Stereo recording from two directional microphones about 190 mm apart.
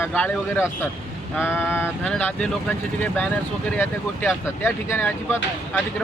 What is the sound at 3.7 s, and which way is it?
Speech, 10° left (ahead or behind).